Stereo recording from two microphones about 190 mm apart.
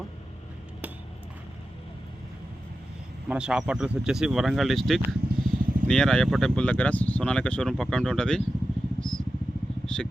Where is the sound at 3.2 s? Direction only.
5° right (ahead or behind).